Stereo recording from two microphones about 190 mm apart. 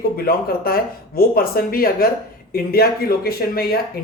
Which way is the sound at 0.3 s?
50° left (ahead or behind).